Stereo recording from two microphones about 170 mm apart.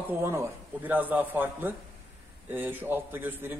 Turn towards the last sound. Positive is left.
turn(degrees=-10)  # may be behind; listen again after turning